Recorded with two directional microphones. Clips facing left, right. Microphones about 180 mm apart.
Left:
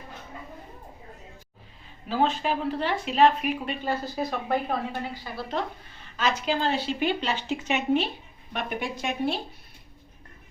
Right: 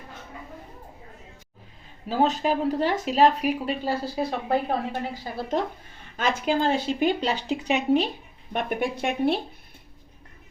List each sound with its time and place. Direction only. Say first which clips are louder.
2.0 s speech: right 2 dB; 40° right (ahead or behind)
6.1 s a woman's voice: right 2 dB; 50° right (ahead or behind)
8.5 s speech: right 5 dB; 55° right (ahead or behind)